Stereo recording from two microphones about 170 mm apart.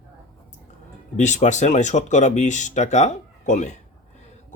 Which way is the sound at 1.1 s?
45° left (ahead or behind).